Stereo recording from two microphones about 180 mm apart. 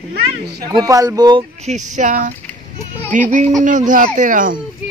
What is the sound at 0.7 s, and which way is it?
Speech, 20° right (ahead or behind).